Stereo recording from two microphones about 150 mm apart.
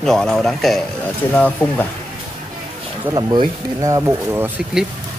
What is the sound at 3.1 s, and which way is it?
Speech, 25° right (ahead or behind).